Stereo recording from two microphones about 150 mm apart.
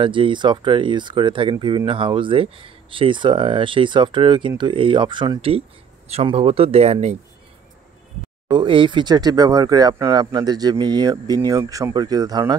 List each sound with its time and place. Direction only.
0.0 s speech: 35° right (ahead or behind)
8.5 s speech: 30° right (ahead or behind)